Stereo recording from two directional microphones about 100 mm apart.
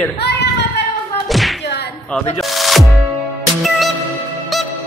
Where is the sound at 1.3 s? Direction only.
Centre (ahead or behind).